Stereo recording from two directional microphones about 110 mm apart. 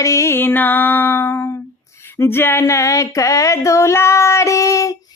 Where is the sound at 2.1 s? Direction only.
25° left (ahead or behind).